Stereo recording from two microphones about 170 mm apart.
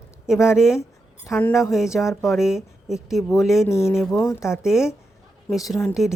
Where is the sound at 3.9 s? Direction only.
Centre (ahead or behind).